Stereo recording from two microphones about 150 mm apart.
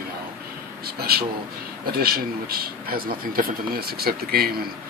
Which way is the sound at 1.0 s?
90° right.